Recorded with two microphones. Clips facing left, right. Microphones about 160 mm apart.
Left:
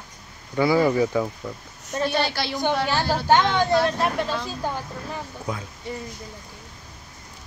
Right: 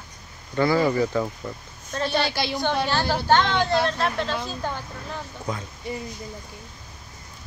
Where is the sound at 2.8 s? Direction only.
15° left (ahead or behind).